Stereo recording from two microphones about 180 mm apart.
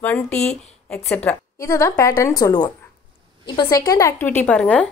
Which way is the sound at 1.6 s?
15° left (ahead or behind).